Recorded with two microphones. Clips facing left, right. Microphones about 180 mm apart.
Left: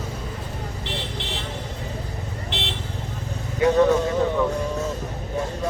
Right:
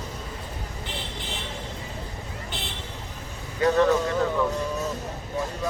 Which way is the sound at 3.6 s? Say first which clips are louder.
Left 3 dB; 15° left (ahead or behind).